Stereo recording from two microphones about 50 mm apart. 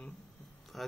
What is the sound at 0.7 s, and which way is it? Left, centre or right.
Speech, centre.